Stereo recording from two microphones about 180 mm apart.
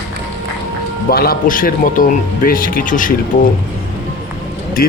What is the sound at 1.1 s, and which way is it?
Speech, 55° left (ahead or behind).